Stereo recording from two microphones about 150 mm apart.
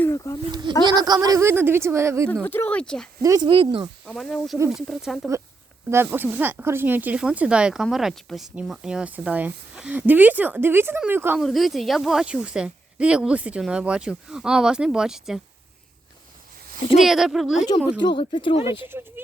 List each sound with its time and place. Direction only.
0.0 s a sound: 20° left (ahead or behind)
0.9 s speech: 25° right (ahead or behind)
2.3 s speech: 10° left (ahead or behind)
3.2 s speech: 25° right (ahead or behind)
4.0 s speech: centre (ahead or behind)
5.9 s speech: 15° right (ahead or behind)
11.3 s speech: centre (ahead or behind)
17.0 s speech: centre (ahead or behind)
18.0 s speech: 35° left (ahead or behind)
18.8 s speech: 15° right (ahead or behind)